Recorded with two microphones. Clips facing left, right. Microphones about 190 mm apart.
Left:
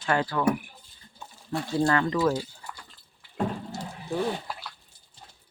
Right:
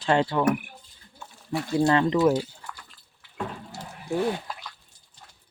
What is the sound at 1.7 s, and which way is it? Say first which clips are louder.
Speech: right 3 dB; 20° right (ahead or behind).